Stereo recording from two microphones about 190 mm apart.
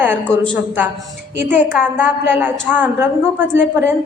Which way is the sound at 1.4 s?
10° right (ahead or behind).